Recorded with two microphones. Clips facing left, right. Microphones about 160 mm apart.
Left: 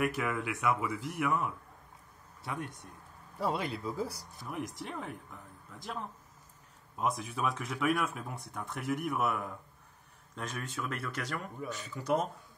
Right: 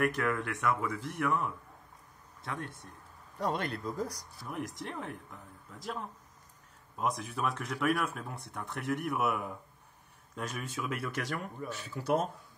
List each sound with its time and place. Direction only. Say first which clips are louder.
0.0 s speech: right 2 dB; 5° left (ahead or behind)